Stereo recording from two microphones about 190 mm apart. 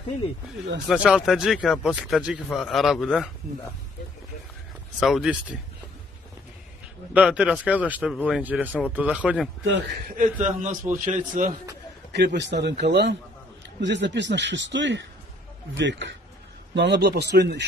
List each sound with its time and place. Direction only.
0.8 s a man's voice: centre (ahead or behind)
5.0 s a man's voice: centre (ahead or behind)
7.2 s speech: 5° right (ahead or behind)
10.1 s a man's voice: 40° right (ahead or behind)
12.1 s a man's voice: 60° right (ahead or behind)